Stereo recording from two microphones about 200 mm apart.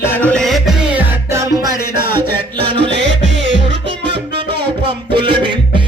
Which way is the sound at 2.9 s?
60° right (ahead or behind).